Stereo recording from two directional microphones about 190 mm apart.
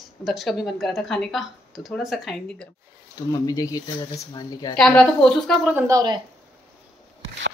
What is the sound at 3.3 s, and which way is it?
Speech, 20° left (ahead or behind).